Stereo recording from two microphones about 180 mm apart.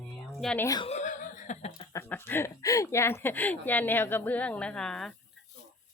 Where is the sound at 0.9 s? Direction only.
40° left (ahead or behind).